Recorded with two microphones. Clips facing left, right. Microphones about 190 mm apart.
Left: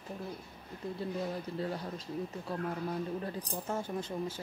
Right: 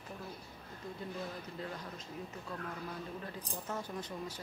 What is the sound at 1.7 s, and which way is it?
Speech, 30° left (ahead or behind).